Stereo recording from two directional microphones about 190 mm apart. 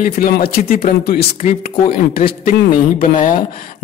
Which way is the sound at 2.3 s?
50° left (ahead or behind).